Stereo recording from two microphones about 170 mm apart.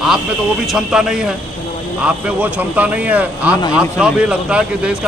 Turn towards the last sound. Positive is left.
turn(degrees=-5)  # may be behind; listen again after turning